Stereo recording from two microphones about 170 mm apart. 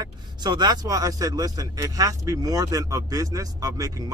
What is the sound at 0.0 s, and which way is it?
Speech, 25° right (ahead or behind).